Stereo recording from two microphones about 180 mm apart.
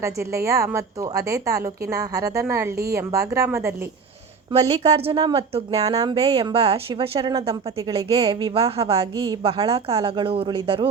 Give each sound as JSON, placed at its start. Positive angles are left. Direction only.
{"t": 0.0, "sound": "a woman's voice", "side_deg": -15}
{"t": 4.8, "sound": "speech", "side_deg": -35}
{"t": 6.0, "sound": "a woman's voice", "side_deg": -25}